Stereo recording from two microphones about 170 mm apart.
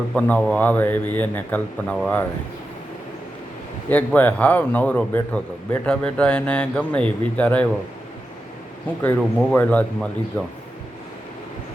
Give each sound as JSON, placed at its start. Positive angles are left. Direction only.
{"t": 0.1, "sound": "speech", "side_deg": 5}
{"t": 3.8, "sound": "speech", "side_deg": 10}
{"t": 9.0, "sound": "speech", "side_deg": 10}